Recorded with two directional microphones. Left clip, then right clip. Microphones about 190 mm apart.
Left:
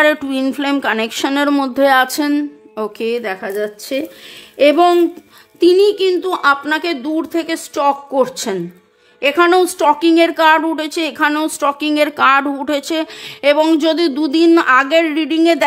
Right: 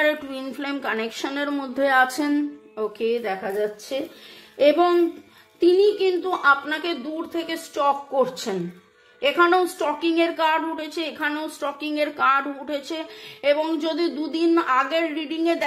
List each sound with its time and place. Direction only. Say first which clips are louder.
0.0 s a woman's voice: left 9 dB; 55° left (ahead or behind)